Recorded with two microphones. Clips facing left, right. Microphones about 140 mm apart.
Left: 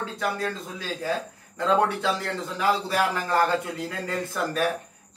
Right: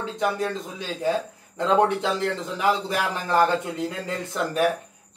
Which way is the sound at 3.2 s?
20° right (ahead or behind).